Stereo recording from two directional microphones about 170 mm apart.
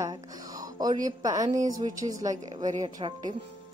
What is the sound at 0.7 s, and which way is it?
A woman's voice, 20° right (ahead or behind).